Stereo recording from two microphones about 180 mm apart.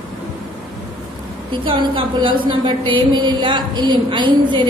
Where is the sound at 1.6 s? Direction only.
30° right (ahead or behind).